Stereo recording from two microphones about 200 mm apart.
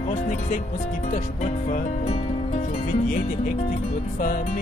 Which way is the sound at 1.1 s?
40° left (ahead or behind).